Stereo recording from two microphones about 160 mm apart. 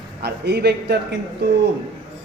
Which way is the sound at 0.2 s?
90° right.